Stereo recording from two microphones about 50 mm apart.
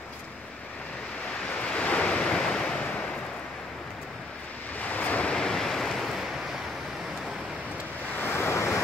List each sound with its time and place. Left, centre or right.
1.6 s waves: left
4.7 s waves: left
5.3 s waves: centre
8.2 s waves: left